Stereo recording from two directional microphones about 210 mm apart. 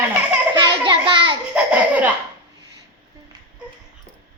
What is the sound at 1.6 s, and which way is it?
Laughter, 5° right (ahead or behind).